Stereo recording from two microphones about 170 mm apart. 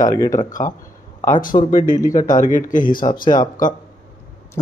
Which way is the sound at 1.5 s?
35° left (ahead or behind).